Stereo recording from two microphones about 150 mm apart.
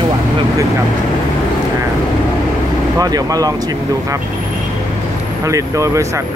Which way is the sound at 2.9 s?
25° right (ahead or behind).